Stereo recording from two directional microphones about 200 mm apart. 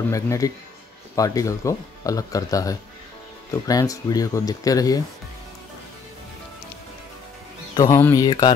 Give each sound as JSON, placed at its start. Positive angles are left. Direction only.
{"t": 0.1, "sound": "speech", "side_deg": 15}
{"t": 7.7, "sound": "speech", "side_deg": 15}